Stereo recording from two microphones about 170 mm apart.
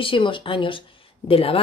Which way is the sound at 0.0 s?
30° left (ahead or behind).